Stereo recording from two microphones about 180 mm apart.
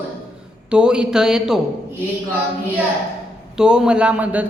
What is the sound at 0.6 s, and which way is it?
Speech, 5° right (ahead or behind).